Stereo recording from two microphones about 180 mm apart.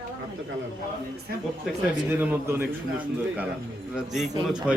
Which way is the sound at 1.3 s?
55° right (ahead or behind).